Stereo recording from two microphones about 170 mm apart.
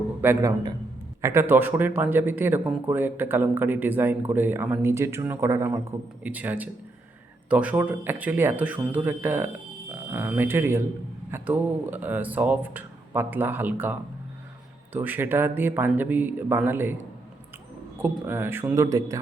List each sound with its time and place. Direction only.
0.2 s speech: 10° right (ahead or behind)
14.9 s speech: 10° right (ahead or behind)
18.0 s speech: 15° right (ahead or behind)